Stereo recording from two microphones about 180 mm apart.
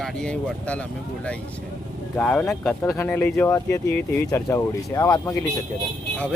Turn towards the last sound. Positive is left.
turn(degrees=5)  # may be behind; listen again after turning